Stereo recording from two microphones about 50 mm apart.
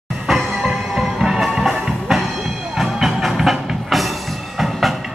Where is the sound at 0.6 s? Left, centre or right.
Centre.